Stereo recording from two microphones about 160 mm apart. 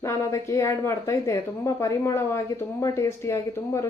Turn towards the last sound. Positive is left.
turn(degrees=15)  # may be behind; listen again after turning